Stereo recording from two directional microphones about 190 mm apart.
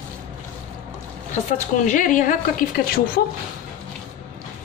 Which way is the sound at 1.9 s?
45° left (ahead or behind).